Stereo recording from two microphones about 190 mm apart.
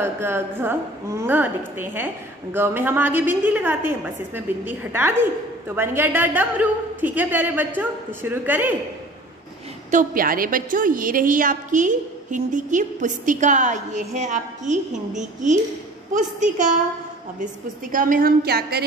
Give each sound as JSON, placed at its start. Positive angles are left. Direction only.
{"t": 0.0, "sound": "a woman's voice", "side_deg": -15}
{"t": 9.8, "sound": "a woman's voice", "side_deg": -45}
{"t": 17.9, "sound": "a woman's voice", "side_deg": -45}